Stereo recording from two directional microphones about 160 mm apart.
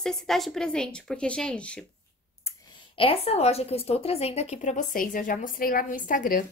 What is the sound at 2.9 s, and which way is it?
A woman's voice, 35° left (ahead or behind).